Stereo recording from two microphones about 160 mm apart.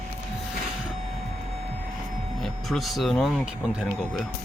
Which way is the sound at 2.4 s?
Centre (ahead or behind).